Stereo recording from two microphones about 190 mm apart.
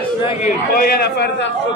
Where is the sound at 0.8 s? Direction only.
55° left (ahead or behind).